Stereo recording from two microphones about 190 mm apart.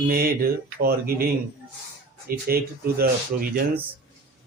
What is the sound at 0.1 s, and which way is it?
Speech, 50° right (ahead or behind).